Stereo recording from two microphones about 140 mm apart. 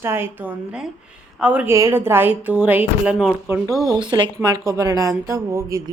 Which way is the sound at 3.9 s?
35° right (ahead or behind).